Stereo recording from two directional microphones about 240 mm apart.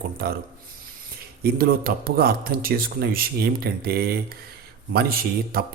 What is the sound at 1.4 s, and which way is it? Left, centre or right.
A man's voice, right.